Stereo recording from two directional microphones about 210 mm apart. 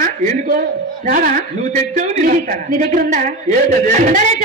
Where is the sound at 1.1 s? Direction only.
40° right (ahead or behind).